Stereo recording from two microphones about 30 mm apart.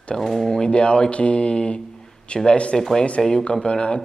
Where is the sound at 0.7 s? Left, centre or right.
Left.